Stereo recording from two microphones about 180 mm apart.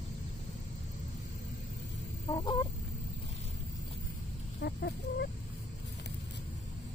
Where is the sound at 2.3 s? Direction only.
25° left (ahead or behind).